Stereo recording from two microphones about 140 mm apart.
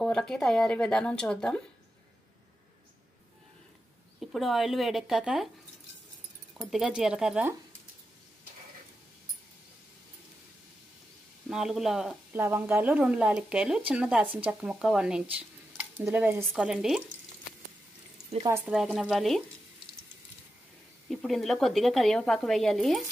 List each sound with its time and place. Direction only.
0.0 s speech: 5° left (ahead or behind)
4.2 s speech: centre (ahead or behind)
6.6 s speech: 5° right (ahead or behind)
11.4 s speech: centre (ahead or behind)
12.4 s speech: 15° right (ahead or behind)
16.4 s speech: 5° right (ahead or behind)
18.7 s speech: centre (ahead or behind)
21.1 s speech: centre (ahead or behind)